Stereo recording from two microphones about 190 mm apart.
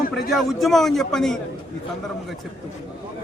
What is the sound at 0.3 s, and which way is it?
A man's voice, centre (ahead or behind).